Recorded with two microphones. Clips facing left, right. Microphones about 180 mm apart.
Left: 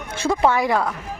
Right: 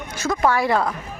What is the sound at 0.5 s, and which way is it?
Speech, 15° left (ahead or behind).